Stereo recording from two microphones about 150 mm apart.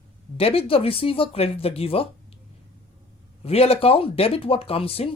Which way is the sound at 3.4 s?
40° left (ahead or behind).